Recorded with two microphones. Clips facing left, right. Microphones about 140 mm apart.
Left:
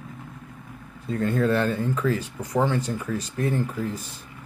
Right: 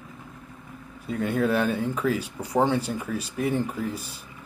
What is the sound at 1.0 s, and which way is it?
Speech, 10° right (ahead or behind).